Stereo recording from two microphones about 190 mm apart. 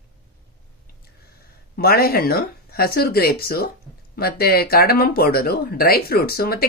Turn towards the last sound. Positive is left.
turn(degrees=55)  # may be behind; listen again after turning